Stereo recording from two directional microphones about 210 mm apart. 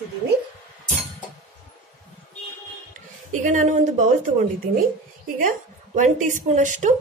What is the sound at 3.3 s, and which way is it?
Speech, 35° right (ahead or behind).